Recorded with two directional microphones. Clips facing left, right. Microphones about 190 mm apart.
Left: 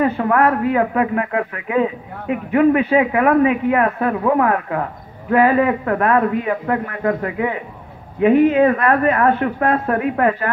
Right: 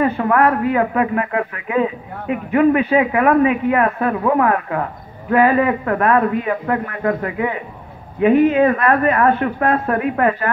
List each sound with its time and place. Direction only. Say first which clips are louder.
0.0 s a man's voice: even; 35° left (ahead or behind)